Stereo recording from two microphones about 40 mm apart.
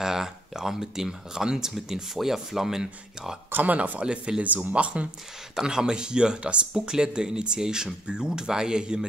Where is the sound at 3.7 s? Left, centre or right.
Right.